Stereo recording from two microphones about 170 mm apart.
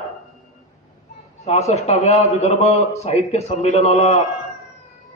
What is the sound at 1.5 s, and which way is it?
A man's voice, 40° left (ahead or behind).